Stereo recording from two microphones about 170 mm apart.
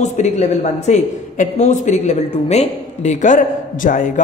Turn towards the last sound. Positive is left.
turn(degrees=50)  # may be behind; listen again after turning